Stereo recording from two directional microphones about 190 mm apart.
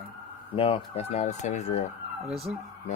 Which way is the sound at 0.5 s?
30° left (ahead or behind).